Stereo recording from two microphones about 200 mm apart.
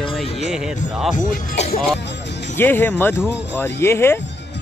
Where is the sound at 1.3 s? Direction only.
35° left (ahead or behind).